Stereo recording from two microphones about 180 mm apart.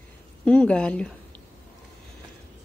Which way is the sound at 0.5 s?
5° left (ahead or behind).